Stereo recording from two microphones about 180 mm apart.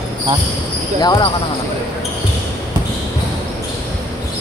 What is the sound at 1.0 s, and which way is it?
Speech, 20° left (ahead or behind).